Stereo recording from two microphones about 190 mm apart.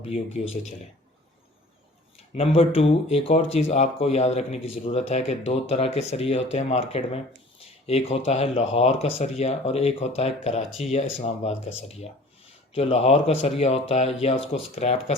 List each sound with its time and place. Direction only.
2.1 s speech: 35° left (ahead or behind)